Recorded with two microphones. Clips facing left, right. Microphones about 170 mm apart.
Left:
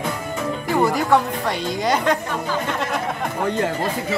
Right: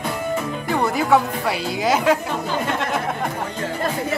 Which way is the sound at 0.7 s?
Centre (ahead or behind).